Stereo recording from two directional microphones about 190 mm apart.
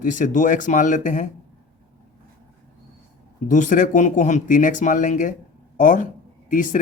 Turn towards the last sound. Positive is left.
turn(degrees=45)  # may be behind; listen again after turning